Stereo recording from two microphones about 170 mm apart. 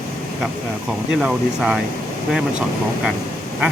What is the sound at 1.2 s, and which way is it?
Speech, centre (ahead or behind).